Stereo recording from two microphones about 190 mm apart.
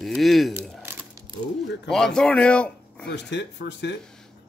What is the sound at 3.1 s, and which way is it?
Speech, 65° left (ahead or behind).